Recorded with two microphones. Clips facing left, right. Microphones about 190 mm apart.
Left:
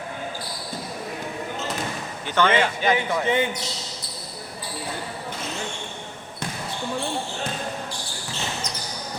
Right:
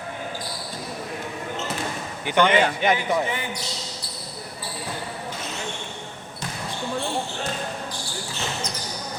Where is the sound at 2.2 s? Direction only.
15° right (ahead or behind).